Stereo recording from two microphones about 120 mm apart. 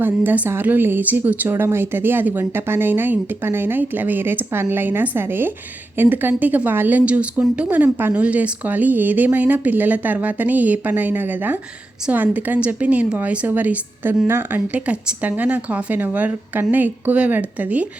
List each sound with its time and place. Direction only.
0.0 s a woman's voice: 15° right (ahead or behind)